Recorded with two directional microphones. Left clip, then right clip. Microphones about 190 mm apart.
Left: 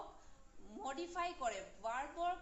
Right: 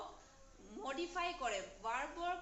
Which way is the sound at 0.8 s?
55° left (ahead or behind).